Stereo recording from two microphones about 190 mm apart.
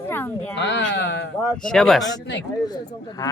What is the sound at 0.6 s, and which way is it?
Speech, 70° left (ahead or behind).